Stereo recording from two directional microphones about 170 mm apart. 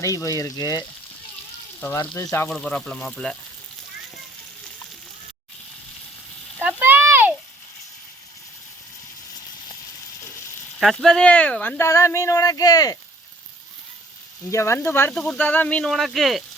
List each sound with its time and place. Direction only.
0.0 s speech: 20° left (ahead or behind)
2.5 s speech: 5° left (ahead or behind)
6.6 s a sound: 10° right (ahead or behind)
10.8 s speech: centre (ahead or behind); by 13.0 s 20° left (ahead or behind)
14.5 s speech: 15° left (ahead or behind); by 16.4 s centre (ahead or behind)